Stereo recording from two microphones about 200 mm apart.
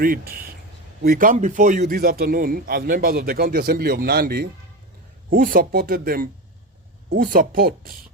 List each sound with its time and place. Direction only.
0.0 s speech: 45° right (ahead or behind)